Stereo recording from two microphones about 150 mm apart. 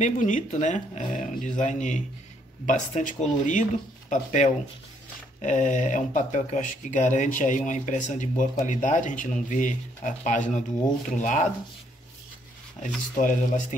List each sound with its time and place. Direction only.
0.0 s speech: 55° left (ahead or behind)
12.8 s speech: 60° left (ahead or behind)